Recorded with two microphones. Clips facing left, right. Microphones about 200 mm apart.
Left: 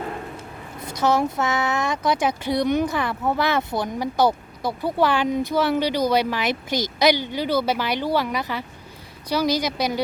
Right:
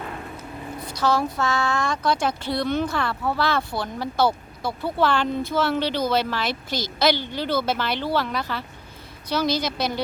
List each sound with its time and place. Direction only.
1.0 s speech: 20° left (ahead or behind)